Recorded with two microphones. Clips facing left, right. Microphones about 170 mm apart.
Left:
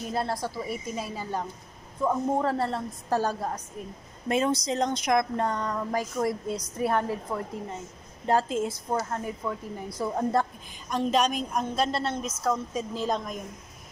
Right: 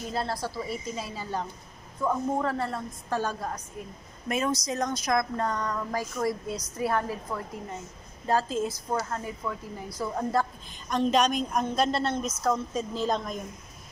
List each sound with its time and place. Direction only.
0.1 s a woman's voice: 20° left (ahead or behind)
10.9 s a woman's voice: 5° left (ahead or behind)